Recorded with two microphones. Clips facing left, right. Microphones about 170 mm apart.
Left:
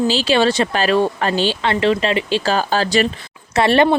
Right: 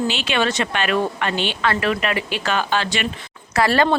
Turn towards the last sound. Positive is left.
turn(degrees=20)  # may be behind; listen again after turning